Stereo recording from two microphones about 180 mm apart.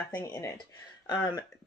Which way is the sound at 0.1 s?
15° left (ahead or behind).